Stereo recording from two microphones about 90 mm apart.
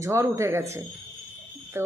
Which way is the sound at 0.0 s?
35° right (ahead or behind).